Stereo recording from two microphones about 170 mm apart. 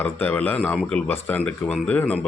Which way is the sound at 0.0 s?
10° left (ahead or behind).